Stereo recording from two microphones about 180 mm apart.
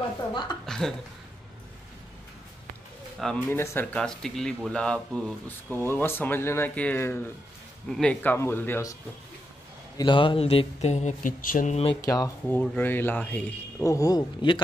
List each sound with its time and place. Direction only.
0.3 s a woman's voice: 25° left (ahead or behind)
0.7 s a sound: 5° left (ahead or behind)
3.4 s speech: 15° left (ahead or behind)
9.9 s speech: 25° left (ahead or behind)
12.0 s speech: 20° left (ahead or behind)